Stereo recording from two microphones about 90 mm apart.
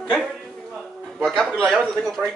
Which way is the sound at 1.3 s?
5° left (ahead or behind).